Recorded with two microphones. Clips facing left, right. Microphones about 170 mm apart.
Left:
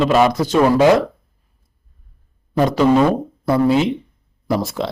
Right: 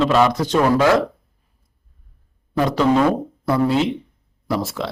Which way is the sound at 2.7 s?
15° left (ahead or behind).